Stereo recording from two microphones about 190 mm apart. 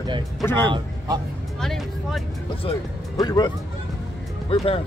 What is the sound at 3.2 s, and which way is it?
Speech, 20° left (ahead or behind).